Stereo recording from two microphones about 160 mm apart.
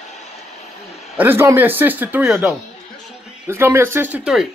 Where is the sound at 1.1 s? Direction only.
15° right (ahead or behind).